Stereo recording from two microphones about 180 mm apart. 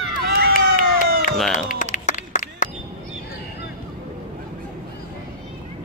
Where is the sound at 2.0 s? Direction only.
45° left (ahead or behind).